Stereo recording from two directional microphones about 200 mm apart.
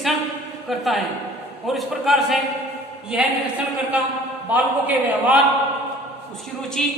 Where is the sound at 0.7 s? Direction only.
Centre (ahead or behind).